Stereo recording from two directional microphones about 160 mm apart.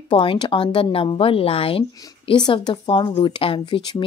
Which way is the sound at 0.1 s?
30° left (ahead or behind).